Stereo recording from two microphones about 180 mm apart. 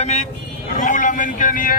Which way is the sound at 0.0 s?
40° left (ahead or behind).